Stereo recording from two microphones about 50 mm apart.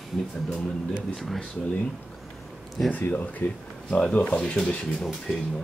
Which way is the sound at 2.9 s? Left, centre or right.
Left.